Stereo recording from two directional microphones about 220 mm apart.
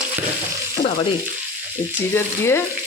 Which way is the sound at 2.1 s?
10° left (ahead or behind).